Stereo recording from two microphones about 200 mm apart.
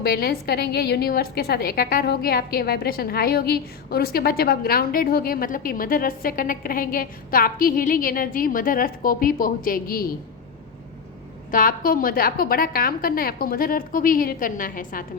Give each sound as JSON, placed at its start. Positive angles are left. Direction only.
{"t": 0.0, "sound": "a woman's voice", "side_deg": 50}
{"t": 11.5, "sound": "a woman's voice", "side_deg": 45}